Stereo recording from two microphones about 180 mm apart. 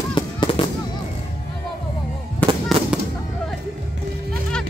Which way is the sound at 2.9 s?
5° right (ahead or behind).